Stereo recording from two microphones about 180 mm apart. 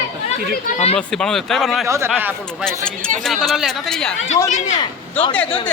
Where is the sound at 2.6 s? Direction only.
5° left (ahead or behind).